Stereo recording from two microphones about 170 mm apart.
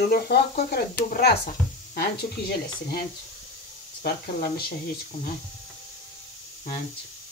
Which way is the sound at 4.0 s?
60° left (ahead or behind).